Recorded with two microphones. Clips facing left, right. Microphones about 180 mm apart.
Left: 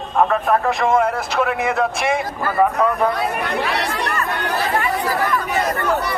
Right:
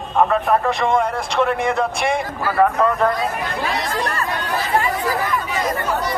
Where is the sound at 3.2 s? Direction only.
65° left (ahead or behind).